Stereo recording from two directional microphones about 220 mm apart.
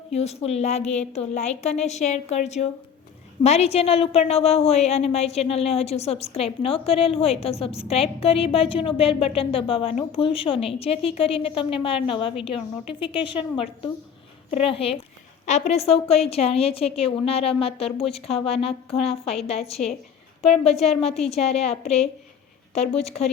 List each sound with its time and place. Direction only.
0.1 s a woman's voice: 30° left (ahead or behind)